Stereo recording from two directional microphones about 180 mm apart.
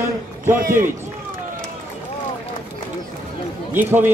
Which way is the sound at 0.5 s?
50° right (ahead or behind).